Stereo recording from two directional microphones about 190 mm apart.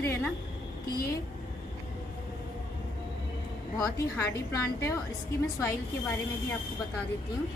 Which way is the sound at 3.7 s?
15° left (ahead or behind).